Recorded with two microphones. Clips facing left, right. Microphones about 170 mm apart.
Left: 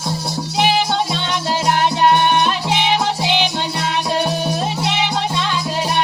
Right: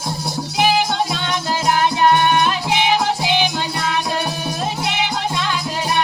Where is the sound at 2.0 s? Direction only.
30° left (ahead or behind).